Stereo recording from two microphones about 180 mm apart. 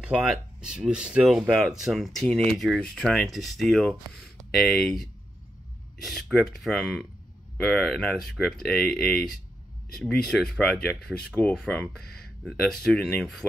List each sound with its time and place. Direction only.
0.0 s speech: 5° right (ahead or behind)
6.0 s speech: centre (ahead or behind)